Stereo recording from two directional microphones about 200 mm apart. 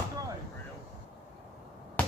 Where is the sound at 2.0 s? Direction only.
10° left (ahead or behind).